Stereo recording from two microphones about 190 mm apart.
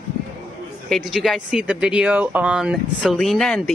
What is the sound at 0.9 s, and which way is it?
Speech, centre (ahead or behind).